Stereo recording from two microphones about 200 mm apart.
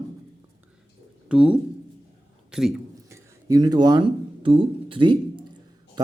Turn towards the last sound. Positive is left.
turn(degrees=-25)  # may be behind; listen again after turning